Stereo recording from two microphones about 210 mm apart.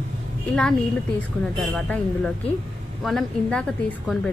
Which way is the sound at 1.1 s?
5° left (ahead or behind).